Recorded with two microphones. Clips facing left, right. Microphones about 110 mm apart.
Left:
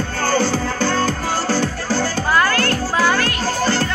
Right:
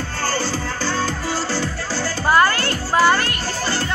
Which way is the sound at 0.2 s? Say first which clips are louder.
Left 5 dB; 55° left (ahead or behind).